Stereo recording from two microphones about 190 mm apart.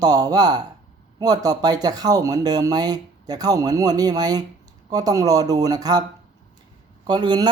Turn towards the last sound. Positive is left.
turn(degrees=-20)  # may be behind; listen again after turning